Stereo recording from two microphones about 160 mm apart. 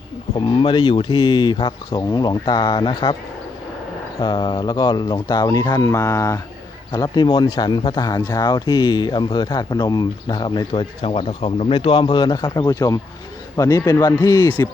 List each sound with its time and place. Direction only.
0.3 s speech: 30° left (ahead or behind)
4.2 s speech: 30° left (ahead or behind)